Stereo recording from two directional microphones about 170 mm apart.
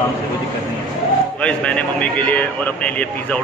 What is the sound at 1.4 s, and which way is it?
A man's voice, 5° left (ahead or behind).